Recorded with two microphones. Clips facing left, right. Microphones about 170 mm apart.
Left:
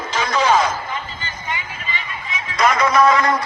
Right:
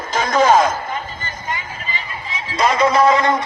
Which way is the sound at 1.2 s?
40° right (ahead or behind).